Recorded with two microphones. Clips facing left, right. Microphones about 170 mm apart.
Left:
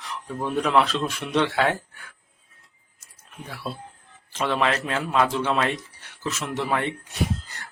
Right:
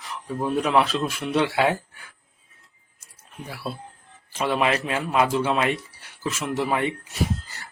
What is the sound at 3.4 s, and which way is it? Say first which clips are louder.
Speech: right 1 dB; 10° right (ahead or behind).